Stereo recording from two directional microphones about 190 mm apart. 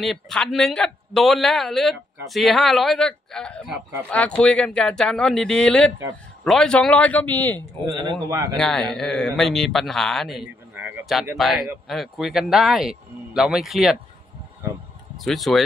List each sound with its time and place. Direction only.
0.0 s a man's voice: centre (ahead or behind)
7.8 s speech: 25° right (ahead or behind)
8.5 s a man's voice: 5° left (ahead or behind)
15.1 s speech: centre (ahead or behind)